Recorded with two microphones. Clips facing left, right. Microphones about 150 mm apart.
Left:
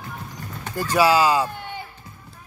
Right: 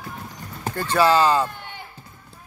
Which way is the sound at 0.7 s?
10° left (ahead or behind).